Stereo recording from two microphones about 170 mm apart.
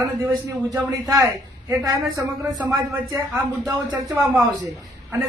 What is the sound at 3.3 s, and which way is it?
Speech, 15° right (ahead or behind).